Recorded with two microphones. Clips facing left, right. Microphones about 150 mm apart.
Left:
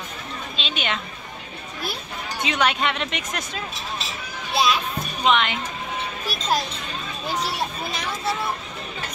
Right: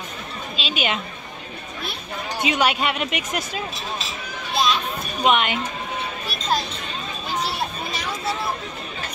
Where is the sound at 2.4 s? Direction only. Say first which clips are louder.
Right 1 dB; 10° right (ahead or behind).